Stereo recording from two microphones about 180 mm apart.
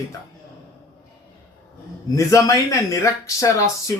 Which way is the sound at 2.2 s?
15° left (ahead or behind).